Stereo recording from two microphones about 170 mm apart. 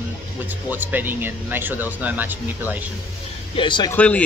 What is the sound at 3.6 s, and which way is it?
Speech, 25° left (ahead or behind).